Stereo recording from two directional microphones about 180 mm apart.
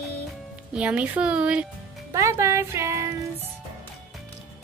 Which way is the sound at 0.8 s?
5° right (ahead or behind).